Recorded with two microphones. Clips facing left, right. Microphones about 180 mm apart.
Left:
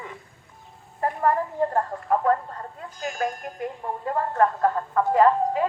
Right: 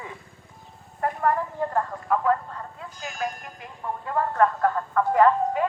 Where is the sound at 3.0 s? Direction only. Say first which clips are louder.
Left 4 dB; 45° left (ahead or behind).